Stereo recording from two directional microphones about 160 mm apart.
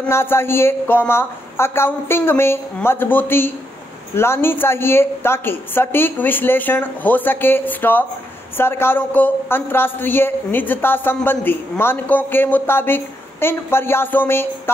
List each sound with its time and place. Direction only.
0.0 s a man's voice: 15° left (ahead or behind)